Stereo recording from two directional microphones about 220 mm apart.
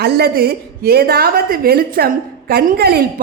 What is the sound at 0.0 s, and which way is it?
A woman's voice, 45° right (ahead or behind).